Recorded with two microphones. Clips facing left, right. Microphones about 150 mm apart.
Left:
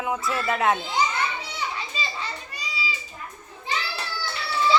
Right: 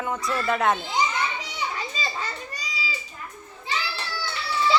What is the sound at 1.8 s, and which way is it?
Children playing, 40° right (ahead or behind).